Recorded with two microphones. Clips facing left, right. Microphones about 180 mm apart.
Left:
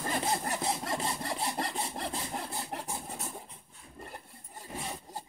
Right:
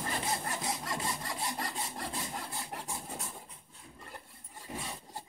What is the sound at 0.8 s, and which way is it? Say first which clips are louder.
Sawing: left 3 dB; 30° left (ahead or behind).